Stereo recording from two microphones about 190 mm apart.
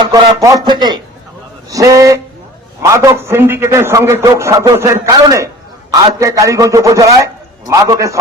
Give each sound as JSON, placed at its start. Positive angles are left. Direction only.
{"t": 0.0, "sound": "a man's voice", "side_deg": -20}